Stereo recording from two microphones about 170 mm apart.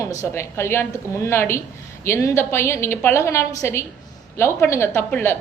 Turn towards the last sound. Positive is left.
turn(degrees=15)  # may be behind; listen again after turning